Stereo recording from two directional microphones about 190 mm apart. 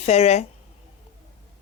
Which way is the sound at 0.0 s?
35° left (ahead or behind).